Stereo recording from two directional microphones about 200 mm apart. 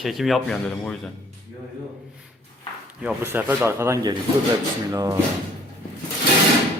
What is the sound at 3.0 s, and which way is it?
Speech, 10° right (ahead or behind).